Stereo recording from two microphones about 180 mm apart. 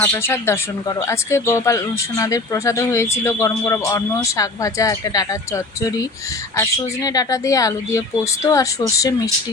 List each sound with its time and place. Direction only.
0.0 s speech: 10° left (ahead or behind)